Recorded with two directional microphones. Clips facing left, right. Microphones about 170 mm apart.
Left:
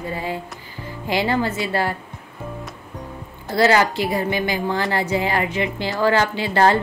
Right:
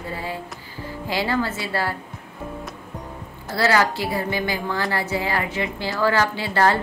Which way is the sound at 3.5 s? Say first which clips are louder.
Left 3 dB; 20° left (ahead or behind).